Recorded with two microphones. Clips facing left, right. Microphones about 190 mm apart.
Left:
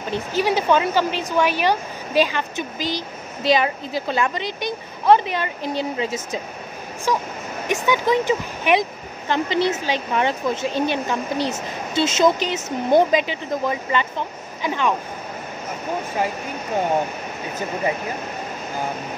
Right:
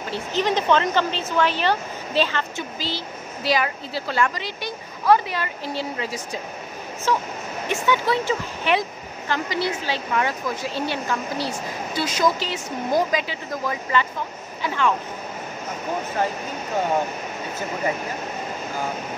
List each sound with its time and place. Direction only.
0.1 s a woman's voice: 10° left (ahead or behind)